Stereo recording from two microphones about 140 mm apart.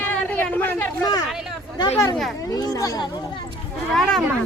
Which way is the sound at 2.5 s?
25° left (ahead or behind).